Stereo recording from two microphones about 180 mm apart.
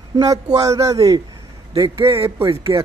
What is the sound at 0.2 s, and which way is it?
Speech, 20° right (ahead or behind).